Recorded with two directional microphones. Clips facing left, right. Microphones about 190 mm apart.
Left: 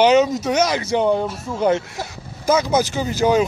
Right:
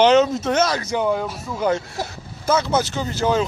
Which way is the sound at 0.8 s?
25° left (ahead or behind).